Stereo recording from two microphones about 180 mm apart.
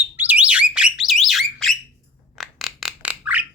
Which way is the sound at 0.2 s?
10° right (ahead or behind).